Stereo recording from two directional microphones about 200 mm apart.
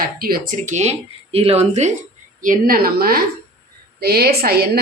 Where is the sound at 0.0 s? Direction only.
45° right (ahead or behind).